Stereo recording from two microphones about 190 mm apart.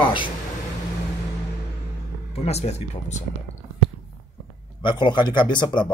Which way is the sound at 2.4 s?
35° left (ahead or behind).